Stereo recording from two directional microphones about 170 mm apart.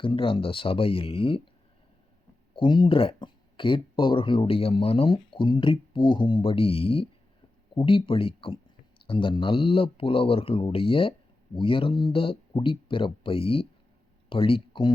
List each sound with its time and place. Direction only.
0.0 s speech: 30° left (ahead or behind)
2.6 s speech: 30° left (ahead or behind)